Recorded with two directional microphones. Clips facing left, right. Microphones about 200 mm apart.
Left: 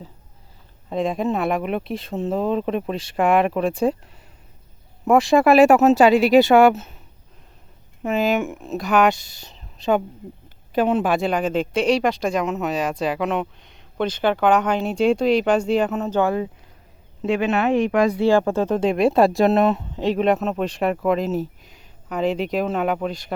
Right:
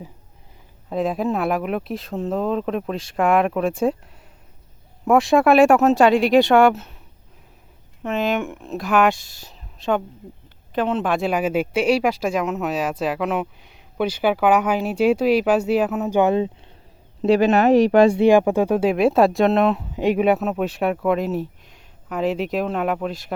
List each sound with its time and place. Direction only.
0.9 s speech: 5° right (ahead or behind)
5.0 s speech: centre (ahead or behind)
8.0 s speech: 5° left (ahead or behind)
10.8 s speech: 10° left (ahead or behind); by 16.5 s 20° right (ahead or behind)
17.2 s speech: 35° right (ahead or behind)
18.2 s speech: 15° right (ahead or behind); by 19.8 s centre (ahead or behind)
19.9 s speech: 10° right (ahead or behind)